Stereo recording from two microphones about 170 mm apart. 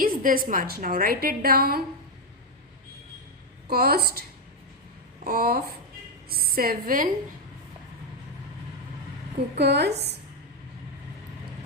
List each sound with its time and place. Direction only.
0.0 s a woman's voice: 55° right (ahead or behind)
3.7 s a woman's voice: 65° right (ahead or behind)
9.6 s a woman's voice: 80° right